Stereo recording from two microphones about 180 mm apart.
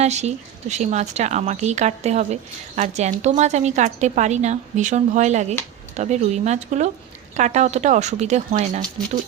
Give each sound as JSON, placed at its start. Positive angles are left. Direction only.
{"t": 0.0, "sound": "speech", "side_deg": -40}